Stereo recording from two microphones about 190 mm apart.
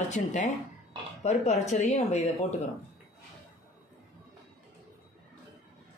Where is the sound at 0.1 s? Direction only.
40° left (ahead or behind).